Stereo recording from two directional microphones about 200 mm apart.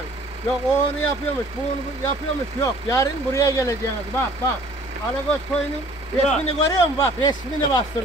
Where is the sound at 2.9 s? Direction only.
15° left (ahead or behind).